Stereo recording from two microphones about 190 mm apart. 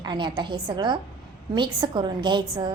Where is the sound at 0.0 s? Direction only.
25° right (ahead or behind).